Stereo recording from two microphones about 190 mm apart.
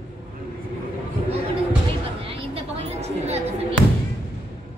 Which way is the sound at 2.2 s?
30° right (ahead or behind).